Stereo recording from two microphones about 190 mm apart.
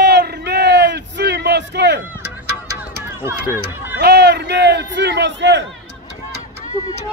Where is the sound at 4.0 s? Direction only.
60° right (ahead or behind).